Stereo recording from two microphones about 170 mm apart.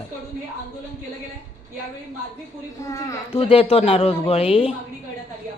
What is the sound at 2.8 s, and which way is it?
Speech, 20° left (ahead or behind).